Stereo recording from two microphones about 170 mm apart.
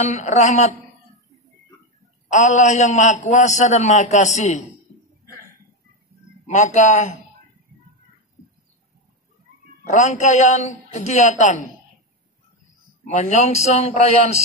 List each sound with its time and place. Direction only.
0.0 s a man's voice: 45° left (ahead or behind)
2.3 s a man's voice: 45° left (ahead or behind)
6.4 s a man's voice: 45° left (ahead or behind)
9.8 s a man's voice: 45° left (ahead or behind)
13.0 s a man's voice: 45° left (ahead or behind)